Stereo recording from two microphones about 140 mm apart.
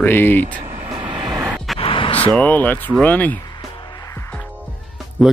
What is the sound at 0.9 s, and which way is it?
Vehicle, 35° right (ahead or behind).